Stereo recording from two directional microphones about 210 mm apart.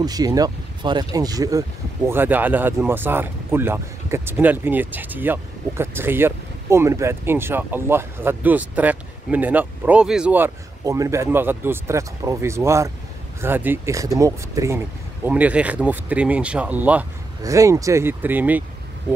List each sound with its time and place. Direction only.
0.0 s speech: 20° right (ahead or behind)